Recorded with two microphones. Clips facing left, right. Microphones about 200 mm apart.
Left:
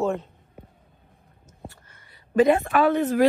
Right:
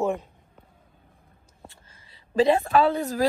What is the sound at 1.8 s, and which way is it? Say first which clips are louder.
Speech: left 1 dB; 25° right (ahead or behind).